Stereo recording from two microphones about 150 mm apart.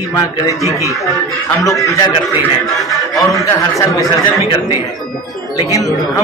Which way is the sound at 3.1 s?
20° left (ahead or behind).